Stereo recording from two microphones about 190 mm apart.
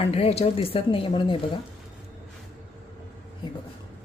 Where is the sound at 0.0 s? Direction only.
30° left (ahead or behind).